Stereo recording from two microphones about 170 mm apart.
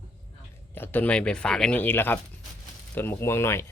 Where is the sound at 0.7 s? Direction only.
10° left (ahead or behind).